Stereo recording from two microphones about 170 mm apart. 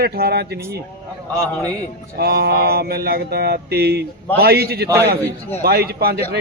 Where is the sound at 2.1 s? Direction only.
70° right (ahead or behind).